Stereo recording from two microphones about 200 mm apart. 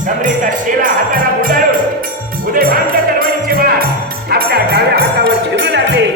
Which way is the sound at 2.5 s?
45° right (ahead or behind).